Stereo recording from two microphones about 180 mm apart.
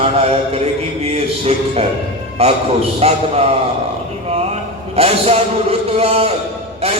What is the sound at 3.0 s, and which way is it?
Speech, 35° right (ahead or behind).